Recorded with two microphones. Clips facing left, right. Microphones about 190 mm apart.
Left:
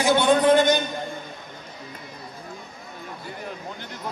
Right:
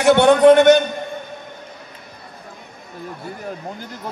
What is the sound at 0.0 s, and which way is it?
Speech, 70° right (ahead or behind).